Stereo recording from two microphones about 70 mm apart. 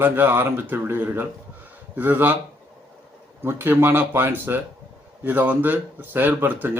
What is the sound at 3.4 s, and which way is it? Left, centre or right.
Speech, right.